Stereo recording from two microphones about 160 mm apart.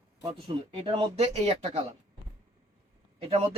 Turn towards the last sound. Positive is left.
turn(degrees=-35)  # may be behind; listen again after turning